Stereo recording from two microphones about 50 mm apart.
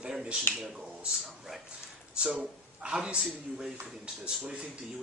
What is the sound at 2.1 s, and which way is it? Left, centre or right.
Speech, centre.